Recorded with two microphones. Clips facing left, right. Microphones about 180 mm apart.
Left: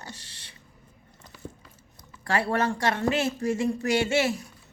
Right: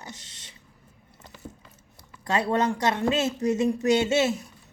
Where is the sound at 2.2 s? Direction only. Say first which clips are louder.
Right 1 dB; 20° right (ahead or behind).